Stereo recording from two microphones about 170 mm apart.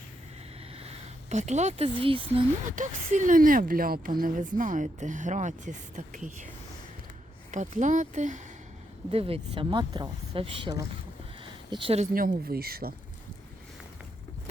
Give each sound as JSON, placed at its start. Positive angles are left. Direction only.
{"t": 0.8, "sound": "speech", "side_deg": -40}
{"t": 2.7, "sound": "speech", "side_deg": -45}
{"t": 7.5, "sound": "speech", "side_deg": -45}
{"t": 9.1, "sound": "speech", "side_deg": -35}
{"t": 11.4, "sound": "a sound", "side_deg": -30}
{"t": 12.1, "sound": "speech", "side_deg": -55}